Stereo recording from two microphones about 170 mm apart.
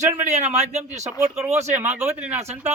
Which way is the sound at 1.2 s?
5° right (ahead or behind).